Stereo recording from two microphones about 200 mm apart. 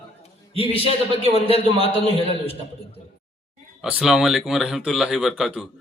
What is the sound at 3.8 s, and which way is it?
A man's voice, centre (ahead or behind).